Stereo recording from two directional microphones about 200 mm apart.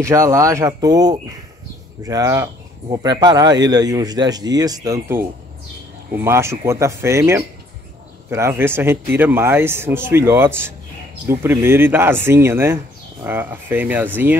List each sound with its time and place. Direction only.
0.0 s speech: 15° right (ahead or behind)